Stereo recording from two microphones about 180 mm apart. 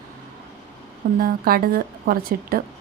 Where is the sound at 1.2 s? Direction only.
55° right (ahead or behind).